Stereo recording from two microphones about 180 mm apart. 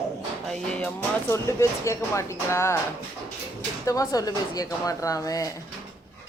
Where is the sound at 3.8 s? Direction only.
20° left (ahead or behind).